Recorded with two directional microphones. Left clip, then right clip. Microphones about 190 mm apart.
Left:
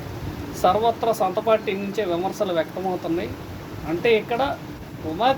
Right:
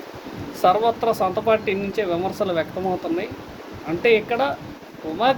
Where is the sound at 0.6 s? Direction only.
15° right (ahead or behind).